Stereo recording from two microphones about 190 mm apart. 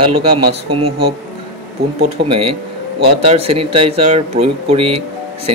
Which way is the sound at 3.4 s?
30° right (ahead or behind).